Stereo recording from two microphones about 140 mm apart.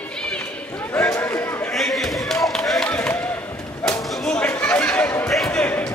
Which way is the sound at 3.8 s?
10° left (ahead or behind).